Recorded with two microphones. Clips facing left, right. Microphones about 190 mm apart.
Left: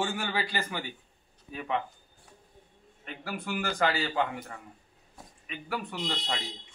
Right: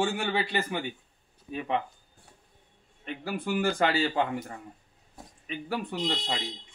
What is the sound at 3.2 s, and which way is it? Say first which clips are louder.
A man's voice: right 5 dB; 25° right (ahead or behind).